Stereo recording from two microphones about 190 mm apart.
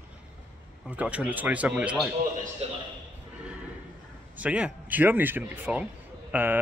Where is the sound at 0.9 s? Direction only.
10° right (ahead or behind).